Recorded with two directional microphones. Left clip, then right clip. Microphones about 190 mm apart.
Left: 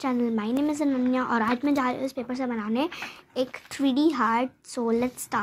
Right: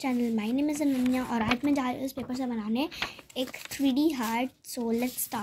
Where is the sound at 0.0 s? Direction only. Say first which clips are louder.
Left 3 dB; 35° right (ahead or behind).